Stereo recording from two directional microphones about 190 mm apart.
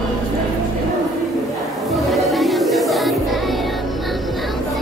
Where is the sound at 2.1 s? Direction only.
Centre (ahead or behind).